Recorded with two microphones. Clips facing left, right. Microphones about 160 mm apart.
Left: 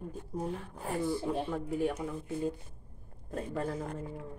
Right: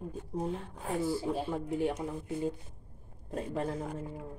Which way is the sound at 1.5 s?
20° right (ahead or behind).